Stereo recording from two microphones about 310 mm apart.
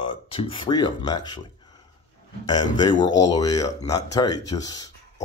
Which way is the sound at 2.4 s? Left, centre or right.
Centre.